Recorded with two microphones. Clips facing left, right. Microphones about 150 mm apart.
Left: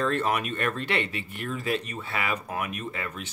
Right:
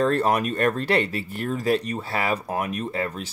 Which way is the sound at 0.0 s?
40° right (ahead or behind).